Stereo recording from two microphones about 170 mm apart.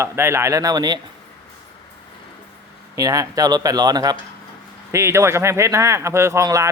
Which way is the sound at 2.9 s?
20° right (ahead or behind).